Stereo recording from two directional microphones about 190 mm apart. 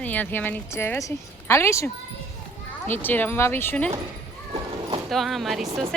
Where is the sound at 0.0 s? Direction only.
10° left (ahead or behind).